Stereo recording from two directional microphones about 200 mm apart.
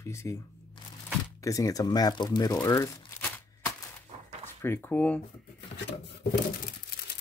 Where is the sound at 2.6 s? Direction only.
15° left (ahead or behind).